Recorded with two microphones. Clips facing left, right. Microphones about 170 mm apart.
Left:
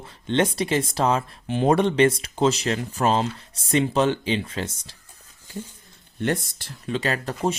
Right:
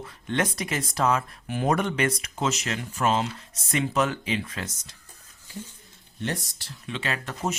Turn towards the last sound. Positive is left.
turn(degrees=40)  # may be behind; listen again after turning